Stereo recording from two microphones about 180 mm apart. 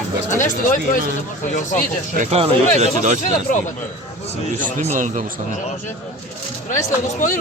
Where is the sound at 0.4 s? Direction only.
45° left (ahead or behind).